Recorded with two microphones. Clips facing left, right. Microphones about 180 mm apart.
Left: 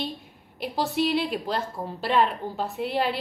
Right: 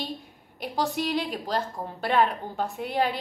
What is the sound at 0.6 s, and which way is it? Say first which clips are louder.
A woman's voice: left 2 dB; 45° right (ahead or behind).